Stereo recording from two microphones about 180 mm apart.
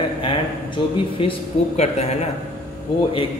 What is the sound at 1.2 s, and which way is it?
Speech, 30° left (ahead or behind).